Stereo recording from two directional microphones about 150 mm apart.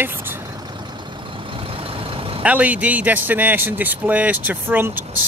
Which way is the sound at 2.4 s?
10° right (ahead or behind).